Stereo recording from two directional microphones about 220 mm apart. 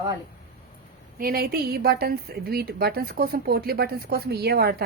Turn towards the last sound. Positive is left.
turn(degrees=-45)  # may be behind; listen again after turning